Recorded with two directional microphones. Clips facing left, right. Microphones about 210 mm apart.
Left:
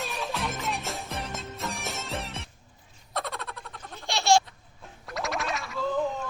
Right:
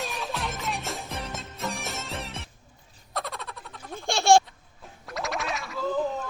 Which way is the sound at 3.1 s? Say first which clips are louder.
Left 1 dB; centre (ahead or behind).